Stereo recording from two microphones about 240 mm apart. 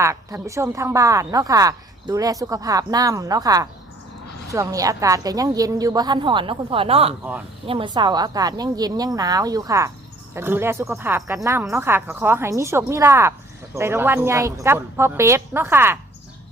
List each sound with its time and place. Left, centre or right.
0.0 s speech: centre